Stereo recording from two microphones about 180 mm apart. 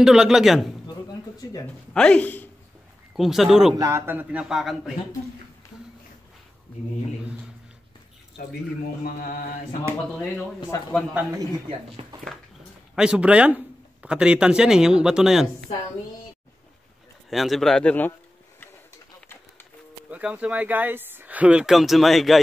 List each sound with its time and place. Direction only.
0.0 s speech: 5° right (ahead or behind)
1.4 s speech: 20° left (ahead or behind)
2.0 s speech: 5° left (ahead or behind)
3.2 s speech: centre (ahead or behind)
3.7 s speech: 15° right (ahead or behind)
9.0 s mantra: 50° left (ahead or behind)
10.1 s speech: 5° left (ahead or behind)
12.0 s speech: 30° right (ahead or behind)
12.9 s speech: 5° right (ahead or behind)
17.3 s speech: centre (ahead or behind)
20.1 s speech: 5° right (ahead or behind)